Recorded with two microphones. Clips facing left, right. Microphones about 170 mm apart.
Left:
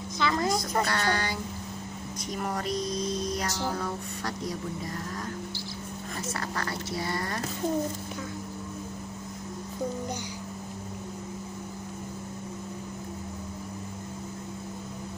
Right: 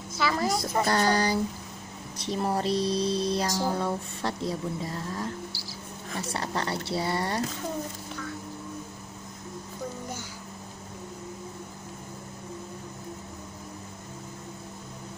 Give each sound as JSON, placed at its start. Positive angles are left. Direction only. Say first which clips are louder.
{"t": 0.2, "sound": "a woman's voice", "louder": "even", "side_deg": -5}
{"t": 0.8, "sound": "speech", "louder": "right 5 dB", "side_deg": -35}
{"t": 3.7, "sound": "music", "louder": "right 3 dB", "side_deg": -25}
{"t": 6.3, "sound": "music", "louder": "right 4 dB", "side_deg": -25}